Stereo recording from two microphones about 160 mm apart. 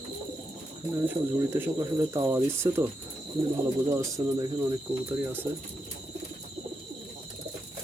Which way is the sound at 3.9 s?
20° right (ahead or behind).